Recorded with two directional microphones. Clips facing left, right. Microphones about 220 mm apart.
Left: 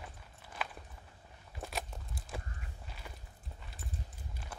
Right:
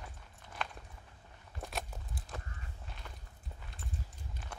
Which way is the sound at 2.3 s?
10° left (ahead or behind).